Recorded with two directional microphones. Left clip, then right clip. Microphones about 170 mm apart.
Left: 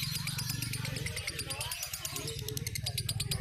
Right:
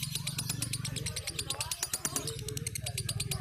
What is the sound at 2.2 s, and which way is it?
Vehicle, 10° right (ahead or behind).